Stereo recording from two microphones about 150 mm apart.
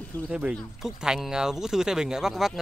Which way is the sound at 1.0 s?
5° right (ahead or behind).